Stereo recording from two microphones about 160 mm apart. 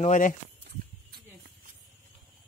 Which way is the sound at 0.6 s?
90° right.